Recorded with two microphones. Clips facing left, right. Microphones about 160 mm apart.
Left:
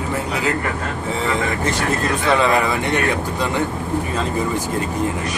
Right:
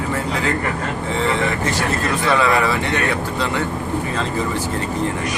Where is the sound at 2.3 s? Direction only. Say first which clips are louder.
Even; 20° left (ahead or behind).